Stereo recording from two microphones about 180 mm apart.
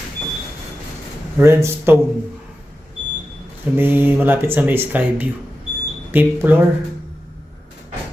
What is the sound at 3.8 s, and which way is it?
Speech, 10° right (ahead or behind).